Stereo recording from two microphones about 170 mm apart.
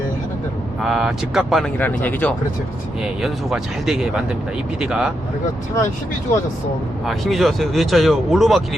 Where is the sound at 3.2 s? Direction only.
5° right (ahead or behind).